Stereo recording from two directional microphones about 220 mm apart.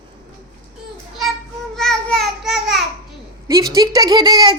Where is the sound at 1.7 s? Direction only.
Centre (ahead or behind).